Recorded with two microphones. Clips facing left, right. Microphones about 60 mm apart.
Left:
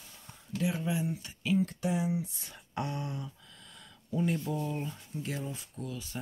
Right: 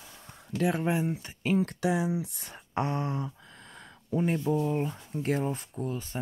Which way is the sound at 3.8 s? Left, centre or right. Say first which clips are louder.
Right 3 dB; right.